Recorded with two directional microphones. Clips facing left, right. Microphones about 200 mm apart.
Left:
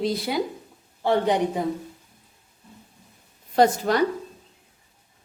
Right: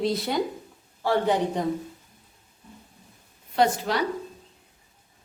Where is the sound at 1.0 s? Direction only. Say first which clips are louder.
Left 2 dB; 20° left (ahead or behind).